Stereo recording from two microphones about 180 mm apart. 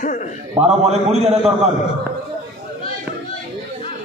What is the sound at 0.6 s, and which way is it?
Speech, 35° right (ahead or behind).